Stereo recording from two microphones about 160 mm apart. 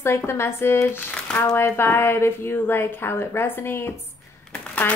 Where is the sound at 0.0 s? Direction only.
15° left (ahead or behind).